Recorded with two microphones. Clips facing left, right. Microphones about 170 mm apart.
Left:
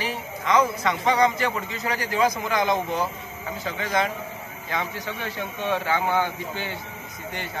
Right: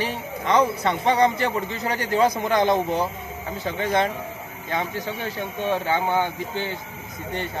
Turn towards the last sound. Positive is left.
turn(degrees=-20)  # may be behind; listen again after turning